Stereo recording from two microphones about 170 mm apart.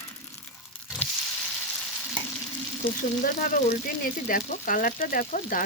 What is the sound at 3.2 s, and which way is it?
Speech, 50° left (ahead or behind).